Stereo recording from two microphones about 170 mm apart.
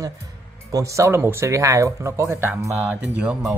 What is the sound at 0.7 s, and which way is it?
Speech, 20° right (ahead or behind).